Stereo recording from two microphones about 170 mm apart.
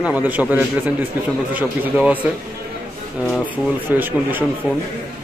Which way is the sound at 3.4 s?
10° right (ahead or behind).